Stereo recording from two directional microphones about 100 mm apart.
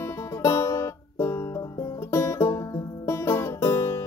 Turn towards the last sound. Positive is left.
turn(degrees=30)  # may be behind; listen again after turning